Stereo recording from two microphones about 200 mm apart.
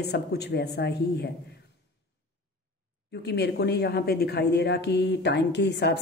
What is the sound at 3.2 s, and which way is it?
A woman's voice, 55° left (ahead or behind).